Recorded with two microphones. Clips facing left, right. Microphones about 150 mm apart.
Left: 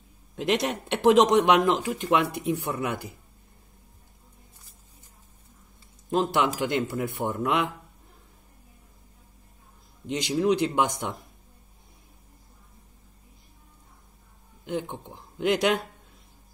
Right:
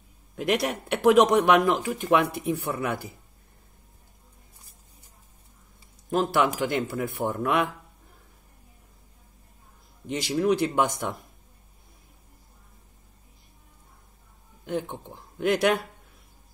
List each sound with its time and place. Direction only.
0.4 s speech: 20° left (ahead or behind)
6.6 s speech: 20° left (ahead or behind)
10.0 s speech: 20° left (ahead or behind)
14.7 s speech: 15° left (ahead or behind)